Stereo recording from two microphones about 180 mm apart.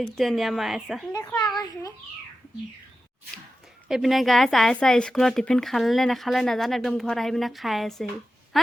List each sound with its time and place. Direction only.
0.2 s a woman's voice: centre (ahead or behind)
1.1 s a child's voice: 15° left (ahead or behind)
3.8 s a woman's voice: centre (ahead or behind)